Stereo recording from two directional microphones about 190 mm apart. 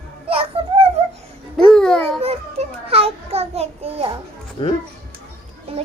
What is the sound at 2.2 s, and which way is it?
A child's voice, 30° right (ahead or behind).